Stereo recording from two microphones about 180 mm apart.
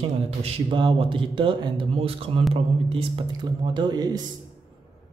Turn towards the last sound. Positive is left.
turn(degrees=-20)  # may be behind; listen again after turning